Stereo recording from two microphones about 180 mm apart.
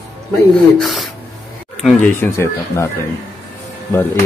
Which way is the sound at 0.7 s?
Centre (ahead or behind).